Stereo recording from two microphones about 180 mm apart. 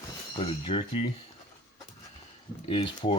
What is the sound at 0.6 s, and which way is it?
Speech, 30° left (ahead or behind).